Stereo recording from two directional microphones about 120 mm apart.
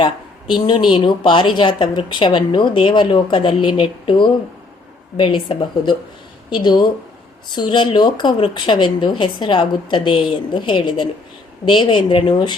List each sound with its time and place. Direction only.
0.0 s speech: 40° left (ahead or behind)